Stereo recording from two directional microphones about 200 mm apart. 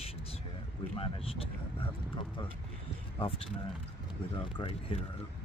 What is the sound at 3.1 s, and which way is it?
Speech, 30° left (ahead or behind).